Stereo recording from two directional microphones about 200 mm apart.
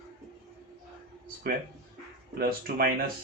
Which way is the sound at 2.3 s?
50° right (ahead or behind).